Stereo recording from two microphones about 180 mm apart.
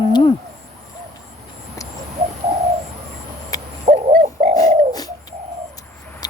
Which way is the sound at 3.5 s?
20° left (ahead or behind).